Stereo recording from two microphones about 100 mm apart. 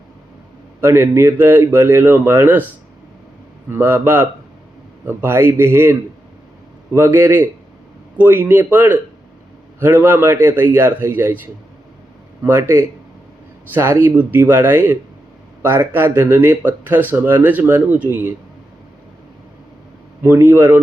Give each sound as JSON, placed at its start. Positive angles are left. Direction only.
{"t": 0.8, "sound": "speech", "side_deg": -25}
{"t": 3.7, "sound": "speech", "side_deg": -25}
{"t": 12.4, "sound": "speech", "side_deg": -25}
{"t": 20.2, "sound": "speech", "side_deg": -20}